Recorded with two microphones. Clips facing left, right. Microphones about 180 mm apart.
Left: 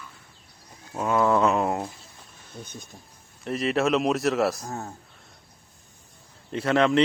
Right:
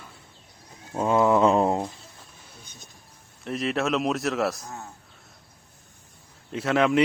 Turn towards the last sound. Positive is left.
turn(degrees=-5)  # may be behind; listen again after turning